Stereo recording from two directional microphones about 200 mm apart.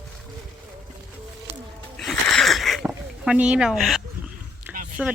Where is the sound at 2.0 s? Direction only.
Centre (ahead or behind).